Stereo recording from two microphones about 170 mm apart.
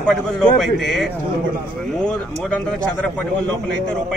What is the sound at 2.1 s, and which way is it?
Speech, 5° left (ahead or behind).